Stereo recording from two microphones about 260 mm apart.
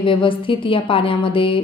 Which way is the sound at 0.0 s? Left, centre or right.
Centre.